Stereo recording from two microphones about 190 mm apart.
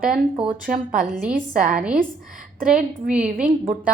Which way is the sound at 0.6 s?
45° right (ahead or behind).